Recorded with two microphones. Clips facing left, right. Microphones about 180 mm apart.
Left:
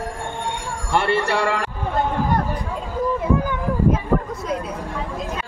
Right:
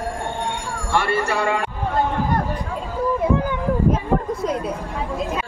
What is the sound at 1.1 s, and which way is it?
Speech, 70° left (ahead or behind).